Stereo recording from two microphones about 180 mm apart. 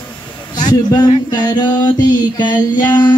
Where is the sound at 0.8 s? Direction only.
20° left (ahead or behind).